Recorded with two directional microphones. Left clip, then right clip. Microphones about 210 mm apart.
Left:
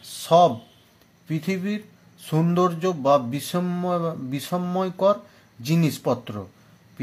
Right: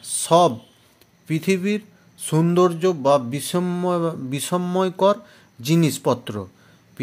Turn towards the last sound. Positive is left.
turn(degrees=-30)  # may be behind; listen again after turning